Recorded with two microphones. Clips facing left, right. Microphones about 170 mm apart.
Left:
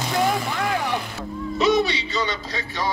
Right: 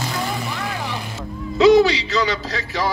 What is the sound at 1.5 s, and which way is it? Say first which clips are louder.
Music: right 8 dB; 90° right.